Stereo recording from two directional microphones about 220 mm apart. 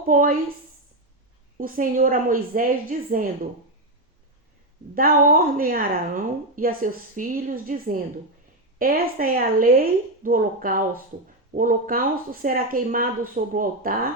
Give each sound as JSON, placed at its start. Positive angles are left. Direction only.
{"t": 0.1, "sound": "a woman's voice", "side_deg": -40}
{"t": 1.5, "sound": "a woman's voice", "side_deg": -40}
{"t": 4.9, "sound": "a woman's voice", "side_deg": -40}